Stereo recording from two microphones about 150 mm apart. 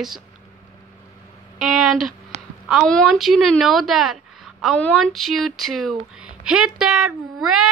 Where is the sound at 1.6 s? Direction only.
Centre (ahead or behind).